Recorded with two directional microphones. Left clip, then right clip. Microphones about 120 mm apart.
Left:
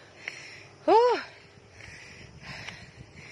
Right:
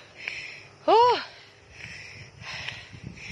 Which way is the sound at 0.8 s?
55° left (ahead or behind).